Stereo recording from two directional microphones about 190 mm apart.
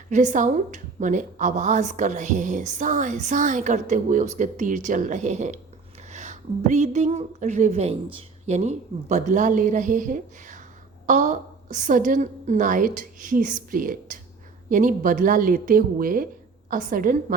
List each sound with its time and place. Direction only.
0.1 s a woman's voice: 40° right (ahead or behind)